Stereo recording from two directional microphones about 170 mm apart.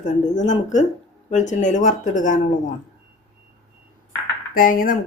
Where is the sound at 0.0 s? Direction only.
45° left (ahead or behind).